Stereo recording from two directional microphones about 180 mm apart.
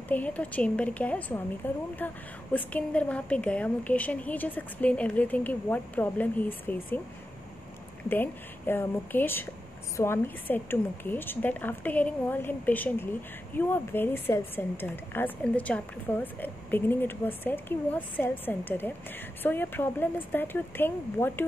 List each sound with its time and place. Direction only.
0.1 s a woman's voice: 10° left (ahead or behind)
8.1 s a woman's voice: 10° left (ahead or behind)